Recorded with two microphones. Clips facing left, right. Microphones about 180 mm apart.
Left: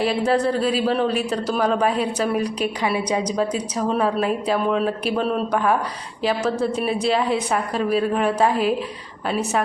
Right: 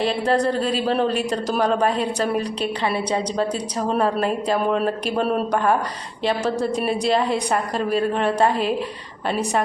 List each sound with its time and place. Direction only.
0.3 s a man's voice: 5° left (ahead or behind)
6.8 s a man's voice: 5° left (ahead or behind)